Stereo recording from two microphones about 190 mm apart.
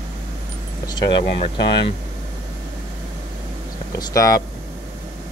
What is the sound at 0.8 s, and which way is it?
Speech, 25° left (ahead or behind).